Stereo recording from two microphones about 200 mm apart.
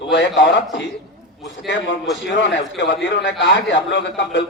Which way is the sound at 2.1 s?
65° left (ahead or behind).